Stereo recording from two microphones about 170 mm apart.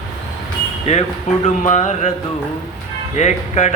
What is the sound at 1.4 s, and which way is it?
Music, 45° left (ahead or behind).